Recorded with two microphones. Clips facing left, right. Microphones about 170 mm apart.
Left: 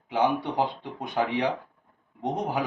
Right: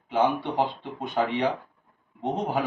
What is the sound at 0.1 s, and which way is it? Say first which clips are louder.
Speech: right 1 dB; 15° left (ahead or behind).